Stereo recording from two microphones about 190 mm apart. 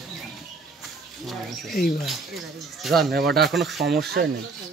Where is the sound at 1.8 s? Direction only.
Centre (ahead or behind).